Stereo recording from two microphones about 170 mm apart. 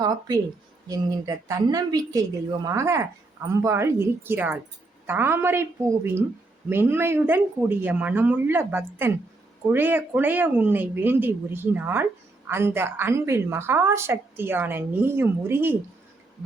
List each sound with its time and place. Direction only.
0.0 s a woman's voice: 20° right (ahead or behind)